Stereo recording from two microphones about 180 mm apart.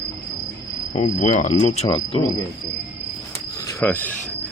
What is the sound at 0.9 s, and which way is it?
Cricket, 40° left (ahead or behind).